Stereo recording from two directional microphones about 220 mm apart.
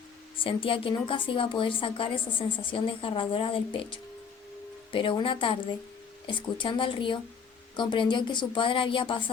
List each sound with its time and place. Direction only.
0.4 s a woman's voice: 25° left (ahead or behind)